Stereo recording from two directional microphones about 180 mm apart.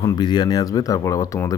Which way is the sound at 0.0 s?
25° left (ahead or behind).